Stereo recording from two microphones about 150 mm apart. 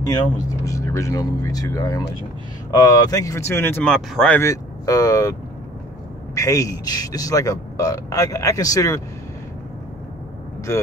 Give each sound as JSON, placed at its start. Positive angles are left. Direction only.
{"t": 0.7, "sound": "a man's voice", "side_deg": 20}
{"t": 4.4, "sound": "speech", "side_deg": 20}
{"t": 6.3, "sound": "a man's voice", "side_deg": 20}